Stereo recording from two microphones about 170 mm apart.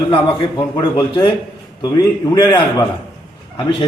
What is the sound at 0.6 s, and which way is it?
A man's voice, 15° left (ahead or behind).